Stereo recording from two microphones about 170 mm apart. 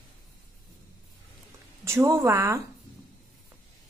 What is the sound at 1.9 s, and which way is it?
Speech, 15° right (ahead or behind).